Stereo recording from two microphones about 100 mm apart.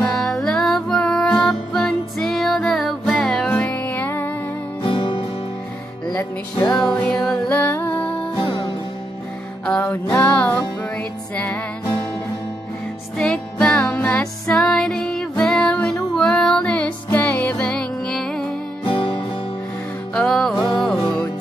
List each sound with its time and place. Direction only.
0.2 s music: 5° left (ahead or behind); by 4.3 s 20° left (ahead or behind)
4.8 s music: 60° left (ahead or behind)
6.8 s music: 5° left (ahead or behind)
8.4 s music: 50° left (ahead or behind)
9.7 s music: 15° left (ahead or behind)
13.2 s music: 5° left (ahead or behind)
18.9 s music: 60° left (ahead or behind)
20.2 s music: 5° left (ahead or behind)